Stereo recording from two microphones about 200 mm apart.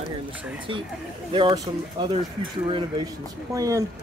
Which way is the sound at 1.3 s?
25° right (ahead or behind).